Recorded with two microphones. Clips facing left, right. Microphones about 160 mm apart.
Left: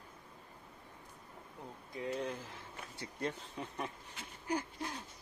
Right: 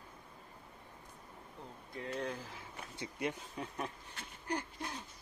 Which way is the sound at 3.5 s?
Centre (ahead or behind).